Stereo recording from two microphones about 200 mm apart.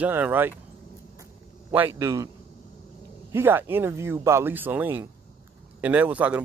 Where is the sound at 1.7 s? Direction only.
10° right (ahead or behind).